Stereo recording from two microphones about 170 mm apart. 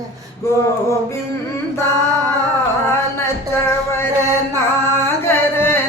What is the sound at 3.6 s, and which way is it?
Music, 15° left (ahead or behind).